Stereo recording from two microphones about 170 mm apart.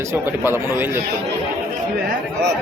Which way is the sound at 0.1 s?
15° right (ahead or behind).